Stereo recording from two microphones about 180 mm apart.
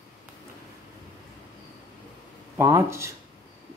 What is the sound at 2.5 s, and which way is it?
Speech, 15° right (ahead or behind).